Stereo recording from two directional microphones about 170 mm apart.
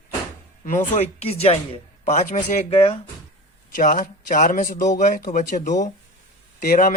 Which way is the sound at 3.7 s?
50° left (ahead or behind).